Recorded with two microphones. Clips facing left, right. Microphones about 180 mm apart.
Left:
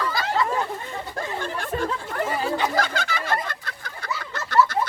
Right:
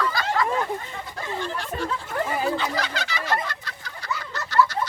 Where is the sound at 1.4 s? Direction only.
50° left (ahead or behind).